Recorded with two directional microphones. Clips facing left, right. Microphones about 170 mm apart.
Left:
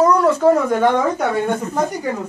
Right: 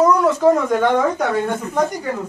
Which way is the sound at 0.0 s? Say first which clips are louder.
Even; centre (ahead or behind).